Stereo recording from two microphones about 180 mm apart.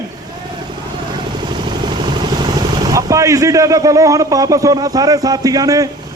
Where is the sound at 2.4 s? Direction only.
20° right (ahead or behind).